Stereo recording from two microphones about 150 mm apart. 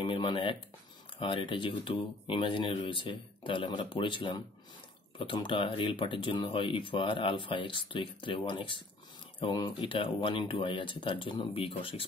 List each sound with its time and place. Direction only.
0.0 s speech: 35° left (ahead or behind)